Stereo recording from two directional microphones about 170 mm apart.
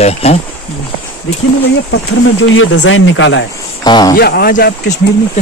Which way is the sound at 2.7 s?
90° left.